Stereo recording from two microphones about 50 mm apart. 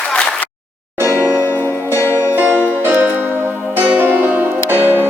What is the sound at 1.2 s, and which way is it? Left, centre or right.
Music, right.